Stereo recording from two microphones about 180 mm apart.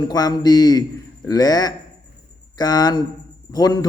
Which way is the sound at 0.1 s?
20° left (ahead or behind).